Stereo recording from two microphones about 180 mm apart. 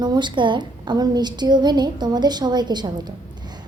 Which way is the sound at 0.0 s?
25° right (ahead or behind).